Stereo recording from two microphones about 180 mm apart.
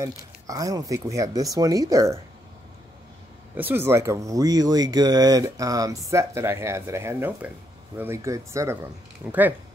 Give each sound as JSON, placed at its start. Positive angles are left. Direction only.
{"t": 0.5, "sound": "speech", "side_deg": -20}
{"t": 3.5, "sound": "speech", "side_deg": -10}